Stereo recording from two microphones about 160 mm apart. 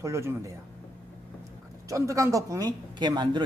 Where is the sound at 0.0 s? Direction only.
15° right (ahead or behind).